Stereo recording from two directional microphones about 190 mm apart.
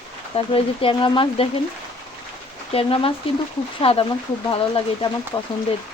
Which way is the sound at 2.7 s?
30° left (ahead or behind).